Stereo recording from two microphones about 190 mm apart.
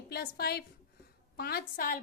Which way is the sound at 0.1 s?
55° left (ahead or behind).